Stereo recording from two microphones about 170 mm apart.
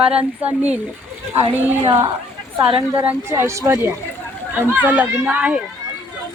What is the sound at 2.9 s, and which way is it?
Speech, 10° right (ahead or behind).